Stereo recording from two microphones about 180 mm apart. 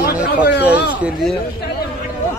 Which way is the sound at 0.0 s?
70° left (ahead or behind).